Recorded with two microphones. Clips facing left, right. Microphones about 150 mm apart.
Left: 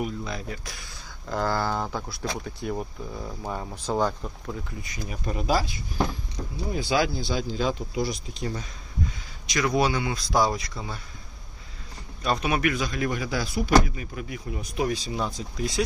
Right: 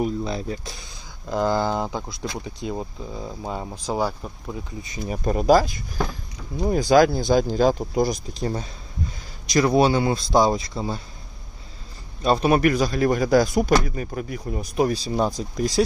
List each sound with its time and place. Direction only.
0.0 s speech: 30° right (ahead or behind)
5.0 s speech: 40° right (ahead or behind)
12.2 s speech: 30° right (ahead or behind)